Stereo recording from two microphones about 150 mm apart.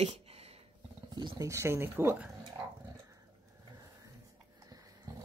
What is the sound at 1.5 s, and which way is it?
Speech, 20° right (ahead or behind).